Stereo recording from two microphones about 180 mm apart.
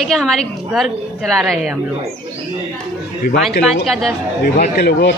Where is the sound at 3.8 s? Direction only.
Centre (ahead or behind).